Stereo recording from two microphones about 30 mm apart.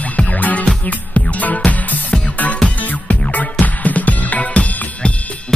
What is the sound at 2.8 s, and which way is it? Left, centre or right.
Music, left.